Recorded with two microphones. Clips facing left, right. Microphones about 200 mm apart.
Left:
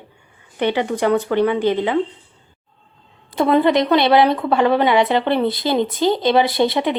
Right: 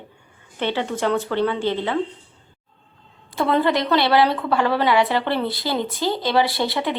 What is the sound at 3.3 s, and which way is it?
A woman's voice, 20° left (ahead or behind).